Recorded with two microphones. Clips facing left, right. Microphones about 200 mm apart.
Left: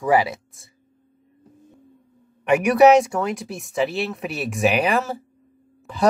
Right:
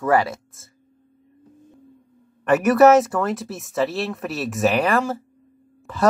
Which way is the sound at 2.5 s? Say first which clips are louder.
Even; centre (ahead or behind).